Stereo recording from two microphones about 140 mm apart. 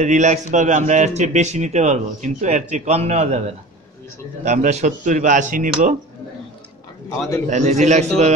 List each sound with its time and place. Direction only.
0.0 s a man's voice: 60° right (ahead or behind)
4.5 s a man's voice: 55° right (ahead or behind)
7.4 s a man's voice: 55° right (ahead or behind)